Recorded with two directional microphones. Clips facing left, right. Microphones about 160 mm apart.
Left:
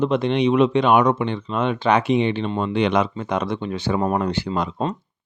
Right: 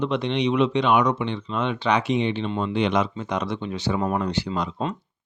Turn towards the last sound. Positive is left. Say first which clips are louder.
# left 3 dB
turn(degrees=55)  # may be behind; listen again after turning